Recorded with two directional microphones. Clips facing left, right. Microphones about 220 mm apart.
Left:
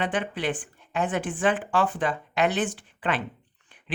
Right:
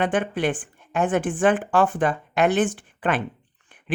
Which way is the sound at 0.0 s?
50° right (ahead or behind).